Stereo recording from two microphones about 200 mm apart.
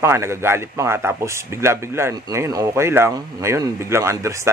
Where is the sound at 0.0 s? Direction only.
15° right (ahead or behind).